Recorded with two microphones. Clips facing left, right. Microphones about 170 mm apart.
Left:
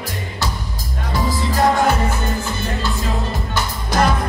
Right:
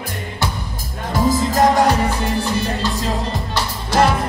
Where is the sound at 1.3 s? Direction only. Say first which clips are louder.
Right 2 dB; 40° right (ahead or behind).